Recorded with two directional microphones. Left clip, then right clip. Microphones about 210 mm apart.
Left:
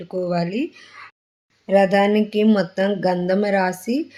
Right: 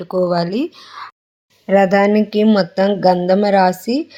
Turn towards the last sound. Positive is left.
turn(degrees=-10)  # may be behind; listen again after turning